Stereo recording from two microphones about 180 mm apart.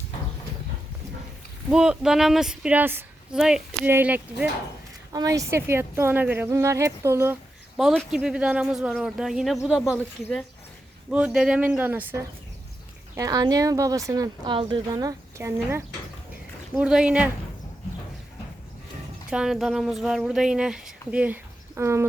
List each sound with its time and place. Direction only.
1.7 s speech: 5° right (ahead or behind)
7.8 s speech: centre (ahead or behind)
11.1 s speech: 5° right (ahead or behind)
13.1 s speech: 20° right (ahead or behind)
19.3 s speech: 5° right (ahead or behind)